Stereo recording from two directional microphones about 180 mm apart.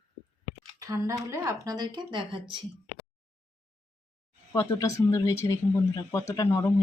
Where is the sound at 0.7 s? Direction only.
20° right (ahead or behind).